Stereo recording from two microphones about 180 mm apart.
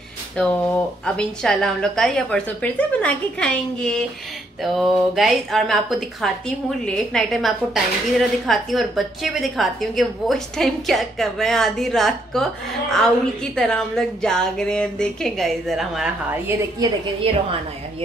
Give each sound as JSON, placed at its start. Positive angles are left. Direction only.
{"t": 0.4, "sound": "a woman's voice", "side_deg": 5}
{"t": 16.8, "sound": "a woman's voice", "side_deg": -30}